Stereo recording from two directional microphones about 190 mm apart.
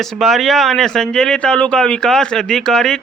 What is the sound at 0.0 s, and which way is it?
Speech, centre (ahead or behind).